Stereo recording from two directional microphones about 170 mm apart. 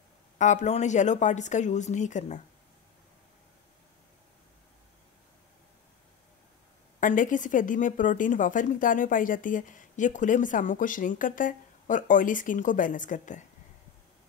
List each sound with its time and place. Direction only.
0.4 s speech: 45° left (ahead or behind)
7.0 s speech: 50° left (ahead or behind)